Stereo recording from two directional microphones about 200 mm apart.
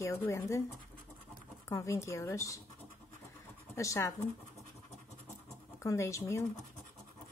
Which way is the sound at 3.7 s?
15° left (ahead or behind).